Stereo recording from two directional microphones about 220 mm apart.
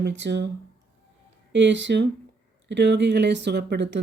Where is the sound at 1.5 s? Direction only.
55° right (ahead or behind).